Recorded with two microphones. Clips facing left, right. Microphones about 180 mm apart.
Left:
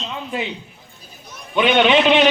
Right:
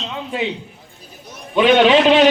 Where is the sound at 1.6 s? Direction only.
35° right (ahead or behind).